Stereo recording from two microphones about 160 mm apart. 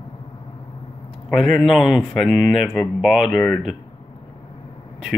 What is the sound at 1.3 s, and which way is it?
Speech, centre (ahead or behind).